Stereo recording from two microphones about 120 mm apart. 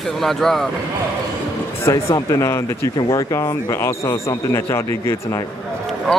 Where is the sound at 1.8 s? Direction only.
25° left (ahead or behind).